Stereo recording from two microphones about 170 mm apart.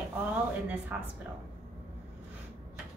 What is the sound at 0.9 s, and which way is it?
Speech, 10° right (ahead or behind).